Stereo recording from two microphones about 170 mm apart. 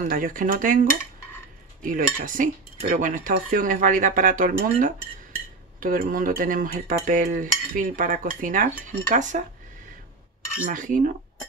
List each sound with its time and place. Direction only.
0.0 s cutlery: 55° right (ahead or behind)
10.6 s cutlery: 50° right (ahead or behind)